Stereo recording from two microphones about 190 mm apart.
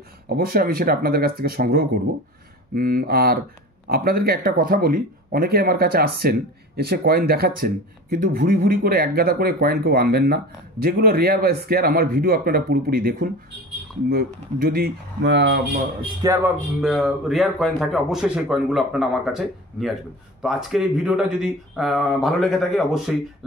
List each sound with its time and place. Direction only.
0.3 s speech: 50° right (ahead or behind)
15.2 s speech: 70° right (ahead or behind)
16.0 s a man's voice: 20° right (ahead or behind)
16.8 s speech: centre (ahead or behind)